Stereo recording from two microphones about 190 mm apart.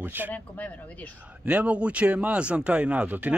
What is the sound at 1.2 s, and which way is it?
Speech, 5° right (ahead or behind).